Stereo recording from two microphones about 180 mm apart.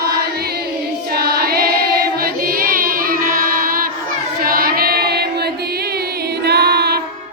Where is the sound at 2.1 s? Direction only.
55° right (ahead or behind).